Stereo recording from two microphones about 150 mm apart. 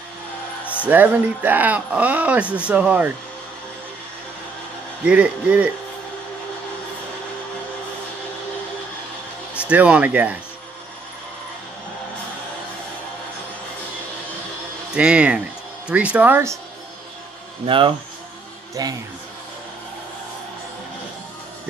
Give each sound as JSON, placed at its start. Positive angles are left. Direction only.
{"t": 0.8, "sound": "speech", "side_deg": -10}
{"t": 5.0, "sound": "speech", "side_deg": -10}
{"t": 9.6, "sound": "speech", "side_deg": -10}
{"t": 15.0, "sound": "speech", "side_deg": -10}
{"t": 17.6, "sound": "speech", "side_deg": -35}